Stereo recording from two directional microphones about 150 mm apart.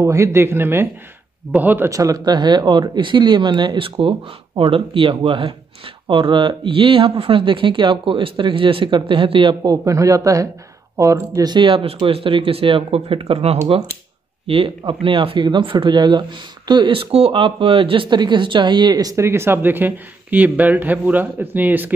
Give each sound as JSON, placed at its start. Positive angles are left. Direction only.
{"t": 0.0, "sound": "speech", "side_deg": -20}